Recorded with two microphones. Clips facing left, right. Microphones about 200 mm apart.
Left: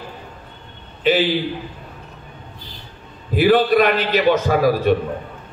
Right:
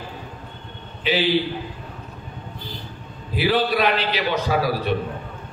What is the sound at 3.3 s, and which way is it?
A man's voice, 50° left (ahead or behind).